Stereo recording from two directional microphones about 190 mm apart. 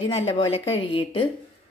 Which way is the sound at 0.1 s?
30° left (ahead or behind).